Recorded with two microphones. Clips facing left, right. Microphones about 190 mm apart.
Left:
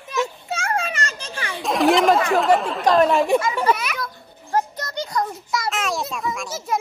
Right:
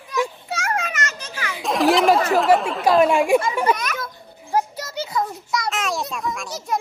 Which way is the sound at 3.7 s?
10° left (ahead or behind).